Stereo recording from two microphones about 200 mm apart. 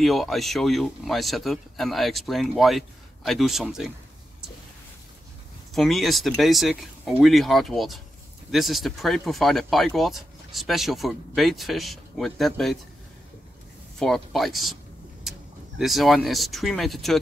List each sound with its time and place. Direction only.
0.0 s speech: centre (ahead or behind)
5.8 s speech: centre (ahead or behind)
13.9 s speech: centre (ahead or behind)
15.3 s vehicle: centre (ahead or behind)
15.8 s speech: centre (ahead or behind)